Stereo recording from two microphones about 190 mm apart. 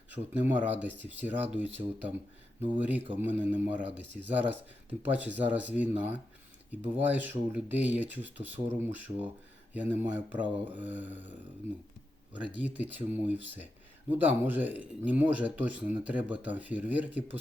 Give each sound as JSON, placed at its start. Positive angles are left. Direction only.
{"t": 0.4, "sound": "speech", "side_deg": -10}
{"t": 0.9, "sound": "speech", "side_deg": -70}
{"t": 1.2, "sound": "speech", "side_deg": -10}
{"t": 12.4, "sound": "speech", "side_deg": -10}